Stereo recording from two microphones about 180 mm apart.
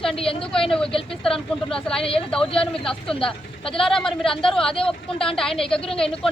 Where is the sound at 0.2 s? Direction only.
30° left (ahead or behind).